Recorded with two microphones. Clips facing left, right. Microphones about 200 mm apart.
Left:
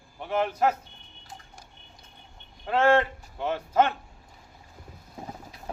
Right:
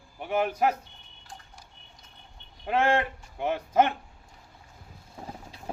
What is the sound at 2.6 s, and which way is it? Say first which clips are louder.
Speech: left 3 dB; 15° right (ahead or behind).